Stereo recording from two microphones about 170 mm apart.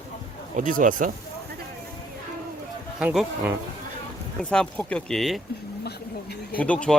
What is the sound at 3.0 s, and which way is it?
Speech, 5° right (ahead or behind).